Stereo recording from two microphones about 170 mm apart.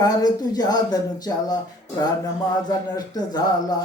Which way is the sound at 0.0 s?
20° left (ahead or behind).